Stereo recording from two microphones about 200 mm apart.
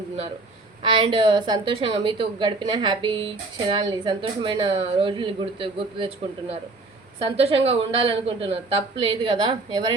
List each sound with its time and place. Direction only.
0.8 s a woman's voice: 25° right (ahead or behind)
7.3 s a woman's voice: 30° right (ahead or behind)